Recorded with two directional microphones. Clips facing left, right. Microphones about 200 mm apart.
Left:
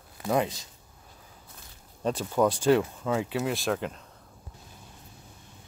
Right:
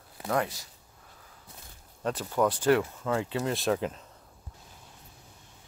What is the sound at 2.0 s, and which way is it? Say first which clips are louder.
Speech: left 2 dB; 15° left (ahead or behind).